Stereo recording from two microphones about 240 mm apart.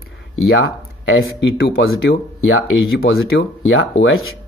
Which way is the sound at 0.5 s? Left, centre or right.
Left.